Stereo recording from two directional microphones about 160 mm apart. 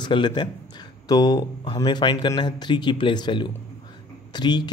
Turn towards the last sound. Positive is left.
turn(degrees=25)  # may be behind; listen again after turning